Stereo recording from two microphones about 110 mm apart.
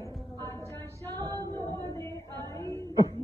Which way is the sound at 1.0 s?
20° left (ahead or behind).